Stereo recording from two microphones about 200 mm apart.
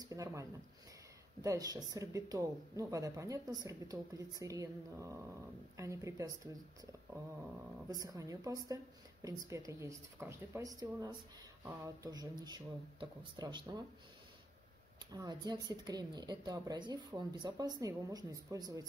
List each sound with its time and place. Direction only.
0.0 s a sound: 15° right (ahead or behind)
1.4 s speech: 15° right (ahead or behind)
7.9 s speech: 15° right (ahead or behind)
15.0 s speech: 20° right (ahead or behind)